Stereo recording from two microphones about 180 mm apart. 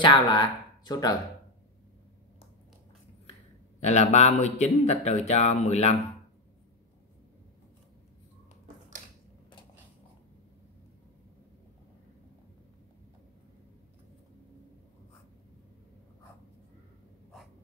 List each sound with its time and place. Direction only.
0.0 s speech: 25° left (ahead or behind)
3.8 s speech: 40° left (ahead or behind)